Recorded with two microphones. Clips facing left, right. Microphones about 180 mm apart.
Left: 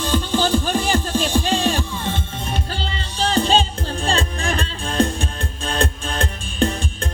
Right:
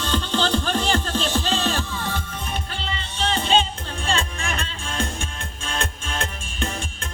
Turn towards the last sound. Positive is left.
turn(degrees=35)  # may be behind; listen again after turning